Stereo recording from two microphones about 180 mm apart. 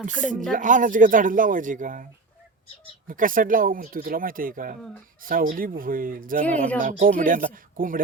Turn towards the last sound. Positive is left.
turn(degrees=-50)  # may be behind; listen again after turning